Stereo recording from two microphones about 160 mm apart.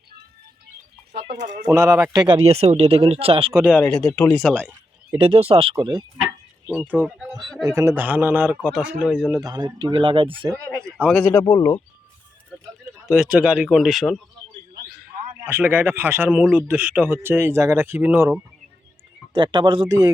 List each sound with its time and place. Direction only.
1.4 s speech: 55° right (ahead or behind)
1.6 s speech: 15° right (ahead or behind); by 3.5 s 35° right (ahead or behind)
3.7 s speech: 5° left (ahead or behind)
5.2 s speech: 35° right (ahead or behind)
6.7 s speech: 10° right (ahead or behind)
7.6 s speech: 20° right (ahead or behind)
9.3 s speech: 25° right (ahead or behind)
11.2 s speech: 20° left (ahead or behind)
13.1 s speech: 5° right (ahead or behind)
15.4 s speech: 15° right (ahead or behind)
19.3 s speech: 30° right (ahead or behind)